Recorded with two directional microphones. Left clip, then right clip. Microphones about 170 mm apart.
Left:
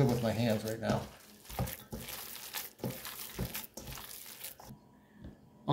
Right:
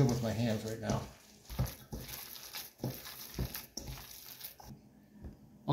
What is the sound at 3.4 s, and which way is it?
Water, 20° left (ahead or behind).